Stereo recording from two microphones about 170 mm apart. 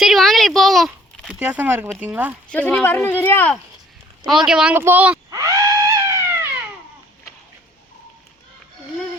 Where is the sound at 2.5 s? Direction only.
10° left (ahead or behind).